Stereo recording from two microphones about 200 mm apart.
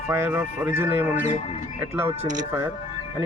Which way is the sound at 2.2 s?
40° right (ahead or behind).